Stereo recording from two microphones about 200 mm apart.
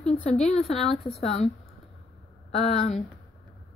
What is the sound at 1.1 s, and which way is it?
Speech, 30° left (ahead or behind).